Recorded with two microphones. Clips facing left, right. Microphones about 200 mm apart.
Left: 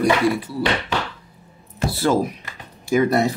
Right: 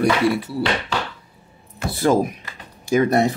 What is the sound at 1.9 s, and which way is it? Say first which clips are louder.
Speech: right 2 dB; 20° right (ahead or behind).